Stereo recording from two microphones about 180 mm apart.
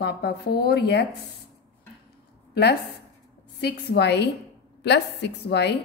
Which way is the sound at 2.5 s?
65° left (ahead or behind).